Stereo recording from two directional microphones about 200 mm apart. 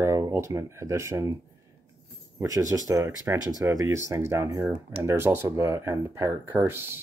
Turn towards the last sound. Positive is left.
turn(degrees=-10)  # may be behind; listen again after turning